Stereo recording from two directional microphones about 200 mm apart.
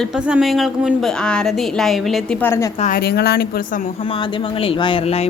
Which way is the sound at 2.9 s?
55° left (ahead or behind).